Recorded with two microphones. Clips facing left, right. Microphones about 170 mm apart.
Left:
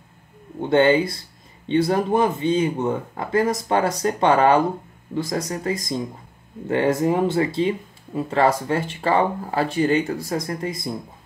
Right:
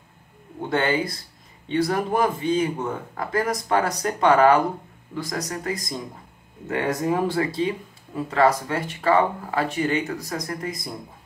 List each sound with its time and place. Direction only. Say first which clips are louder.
0.7 s speech: left 7 dB; 25° left (ahead or behind)